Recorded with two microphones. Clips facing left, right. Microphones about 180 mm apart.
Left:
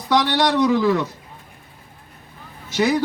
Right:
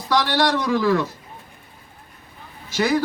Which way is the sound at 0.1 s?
20° left (ahead or behind).